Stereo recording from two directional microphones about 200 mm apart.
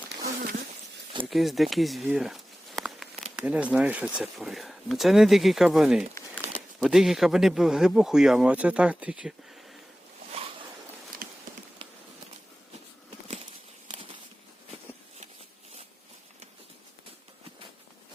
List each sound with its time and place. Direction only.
0.2 s insect: 45° right (ahead or behind)
1.3 s a sound: centre (ahead or behind)
3.3 s speech: 5° right (ahead or behind)
6.1 s crumpling: 10° left (ahead or behind)
6.7 s speech: centre (ahead or behind)
11.2 s a sound: 45° right (ahead or behind)